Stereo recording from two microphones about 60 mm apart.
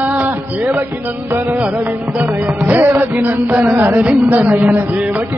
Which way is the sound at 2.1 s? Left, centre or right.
Right.